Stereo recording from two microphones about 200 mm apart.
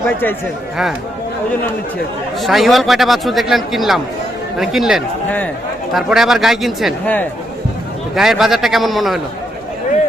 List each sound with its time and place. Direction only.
2.4 s a man's voice: centre (ahead or behind)